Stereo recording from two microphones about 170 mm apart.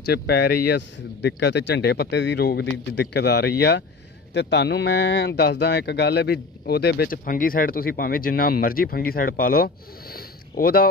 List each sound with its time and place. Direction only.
0.0 s speech: 65° left (ahead or behind)
4.3 s speech: 90° left; by 10.9 s 60° left (ahead or behind)